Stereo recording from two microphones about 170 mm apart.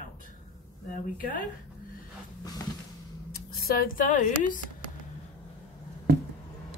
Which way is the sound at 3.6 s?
60° left (ahead or behind).